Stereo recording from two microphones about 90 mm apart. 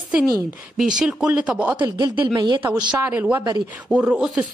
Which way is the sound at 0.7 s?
10° right (ahead or behind).